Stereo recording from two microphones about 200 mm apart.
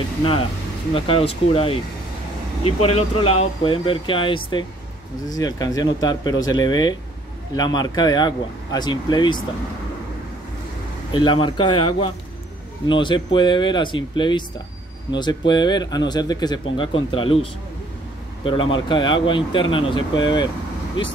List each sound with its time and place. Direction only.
0.9 s speech: 25° left (ahead or behind)
11.1 s speech: 25° left (ahead or behind)